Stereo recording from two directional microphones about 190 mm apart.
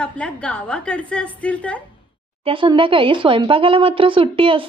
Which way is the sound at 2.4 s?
25° right (ahead or behind).